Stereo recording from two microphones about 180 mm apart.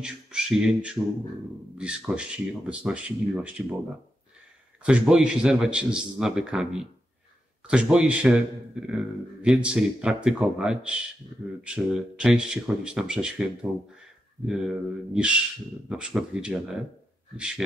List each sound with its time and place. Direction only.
0.0 s a man's voice: 5° right (ahead or behind)
4.8 s a man's voice: 5° right (ahead or behind)